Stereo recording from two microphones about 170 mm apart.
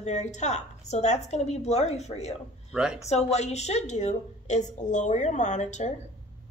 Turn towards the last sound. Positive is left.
turn(degrees=45)  # may be behind; listen again after turning